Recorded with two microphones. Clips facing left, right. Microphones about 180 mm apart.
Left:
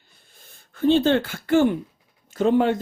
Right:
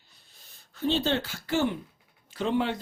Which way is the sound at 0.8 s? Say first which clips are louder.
Left 9 dB; 50° left (ahead or behind).